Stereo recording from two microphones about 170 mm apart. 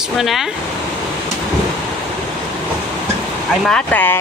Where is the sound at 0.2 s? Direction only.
Centre (ahead or behind).